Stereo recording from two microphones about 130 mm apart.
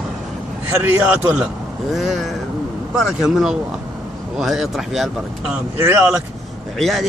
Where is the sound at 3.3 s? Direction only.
5° right (ahead or behind).